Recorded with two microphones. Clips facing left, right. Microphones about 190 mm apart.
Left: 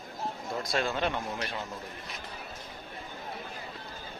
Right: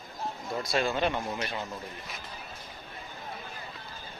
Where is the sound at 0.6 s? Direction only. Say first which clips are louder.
Right 2 dB; 5° right (ahead or behind).